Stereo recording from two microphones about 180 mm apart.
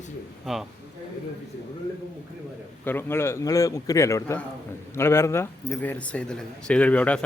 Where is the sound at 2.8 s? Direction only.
10° left (ahead or behind).